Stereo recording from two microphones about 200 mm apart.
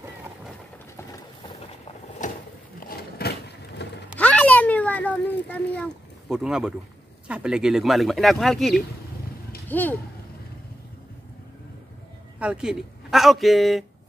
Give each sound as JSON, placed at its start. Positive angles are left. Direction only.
{"t": 3.0, "sound": "vehicle", "side_deg": 50}
{"t": 4.2, "sound": "a sound", "side_deg": 5}
{"t": 7.2, "sound": "speech", "side_deg": -5}
{"t": 12.4, "sound": "speech", "side_deg": -5}